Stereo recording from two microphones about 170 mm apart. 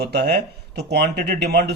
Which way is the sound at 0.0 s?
75° right (ahead or behind).